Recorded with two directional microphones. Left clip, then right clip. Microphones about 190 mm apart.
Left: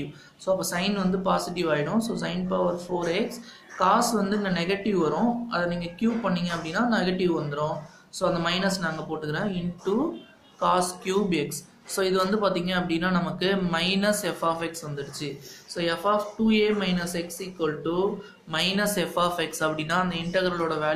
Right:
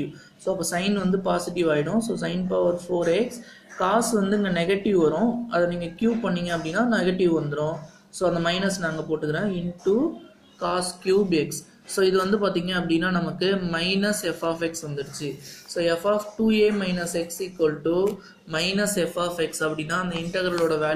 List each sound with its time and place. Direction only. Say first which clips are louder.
0.5 s a woman's voice: even; 25° right (ahead or behind)
10.6 s a woman's voice: left 3 dB; 15° right (ahead or behind)